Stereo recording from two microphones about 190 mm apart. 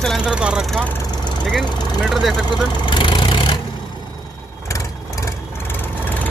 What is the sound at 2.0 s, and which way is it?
Speech, centre (ahead or behind).